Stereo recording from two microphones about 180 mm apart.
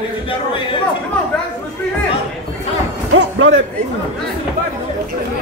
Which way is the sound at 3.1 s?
90° right.